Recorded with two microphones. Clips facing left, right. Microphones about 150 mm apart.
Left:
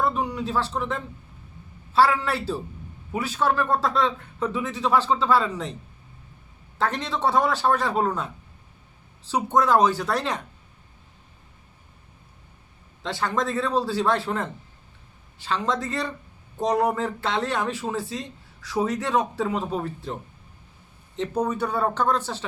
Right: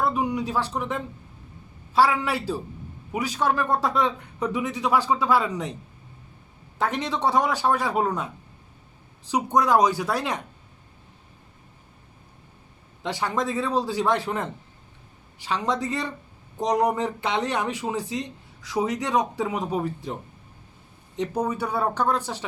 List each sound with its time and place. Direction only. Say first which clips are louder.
0.0 s speech: right 1 dB; 15° right (ahead or behind)
6.7 s speech: even; 10° right (ahead or behind)
13.0 s speech: even; 15° right (ahead or behind)
21.2 s speech: left 1 dB; 10° right (ahead or behind)